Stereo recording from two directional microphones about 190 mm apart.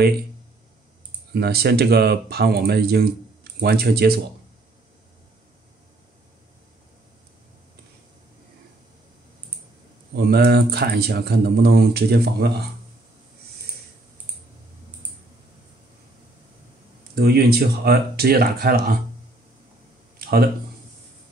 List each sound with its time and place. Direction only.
1.3 s speech: 55° right (ahead or behind)
10.1 s speech: 55° right (ahead or behind)
17.1 s speech: 55° right (ahead or behind)